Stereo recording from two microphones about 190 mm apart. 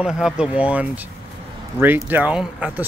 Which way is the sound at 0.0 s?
5° right (ahead or behind).